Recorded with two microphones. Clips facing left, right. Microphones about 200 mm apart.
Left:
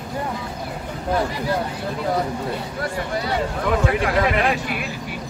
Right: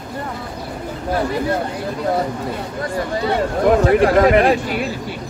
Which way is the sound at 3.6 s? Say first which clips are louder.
Right 9 dB; 40° right (ahead or behind).